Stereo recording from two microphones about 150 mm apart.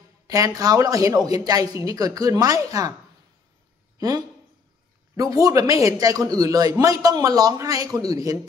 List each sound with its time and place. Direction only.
0.3 s a man's voice: 25° right (ahead or behind)
5.1 s a man's voice: 20° right (ahead or behind)